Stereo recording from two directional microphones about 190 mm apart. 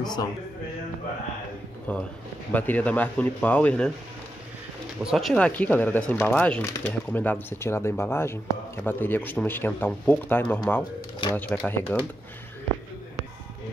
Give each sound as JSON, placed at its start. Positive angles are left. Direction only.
{"t": 0.0, "sound": "speech", "side_deg": 20}
{"t": 1.9, "sound": "speech", "side_deg": 5}
{"t": 5.0, "sound": "speech", "side_deg": 0}
{"t": 10.8, "sound": "speech", "side_deg": 25}
{"t": 11.3, "sound": "speech", "side_deg": 10}